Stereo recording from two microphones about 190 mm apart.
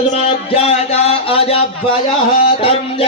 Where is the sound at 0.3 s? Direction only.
35° left (ahead or behind).